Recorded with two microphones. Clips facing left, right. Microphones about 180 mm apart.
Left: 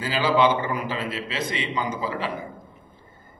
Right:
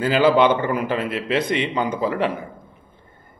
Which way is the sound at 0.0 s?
55° right (ahead or behind).